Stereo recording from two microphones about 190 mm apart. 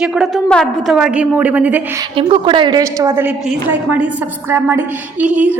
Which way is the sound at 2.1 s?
25° right (ahead or behind).